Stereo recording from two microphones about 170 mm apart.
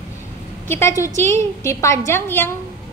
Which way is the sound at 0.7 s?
15° left (ahead or behind).